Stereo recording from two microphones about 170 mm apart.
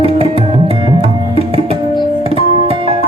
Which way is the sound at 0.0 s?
35° right (ahead or behind).